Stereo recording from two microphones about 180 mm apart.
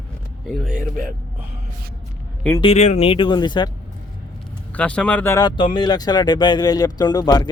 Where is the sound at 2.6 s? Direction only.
35° left (ahead or behind).